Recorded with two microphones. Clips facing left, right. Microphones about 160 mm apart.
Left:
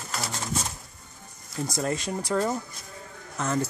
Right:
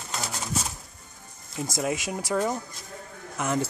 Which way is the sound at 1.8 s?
10° right (ahead or behind).